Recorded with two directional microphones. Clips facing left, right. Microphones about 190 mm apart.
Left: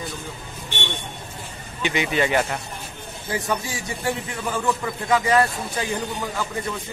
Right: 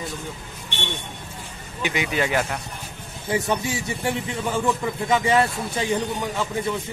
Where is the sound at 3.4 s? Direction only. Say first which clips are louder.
Right 2 dB; 25° right (ahead or behind).